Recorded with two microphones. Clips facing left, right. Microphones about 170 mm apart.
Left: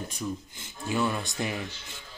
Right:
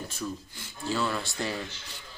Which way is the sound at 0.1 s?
15° left (ahead or behind).